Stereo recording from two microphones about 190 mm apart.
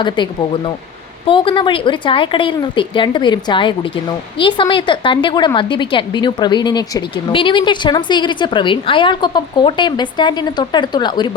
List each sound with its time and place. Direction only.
0.0 s a woman's voice: 25° left (ahead or behind)